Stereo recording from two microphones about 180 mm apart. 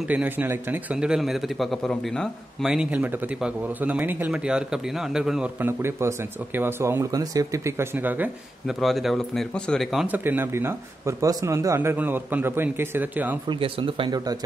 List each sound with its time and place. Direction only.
0.1 s a man's voice: 10° right (ahead or behind)
8.7 s a man's voice: centre (ahead or behind)
13.5 s speech: 30° right (ahead or behind)